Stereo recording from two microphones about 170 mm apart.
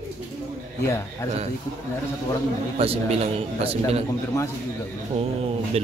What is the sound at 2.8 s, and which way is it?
A man's voice, 35° right (ahead or behind).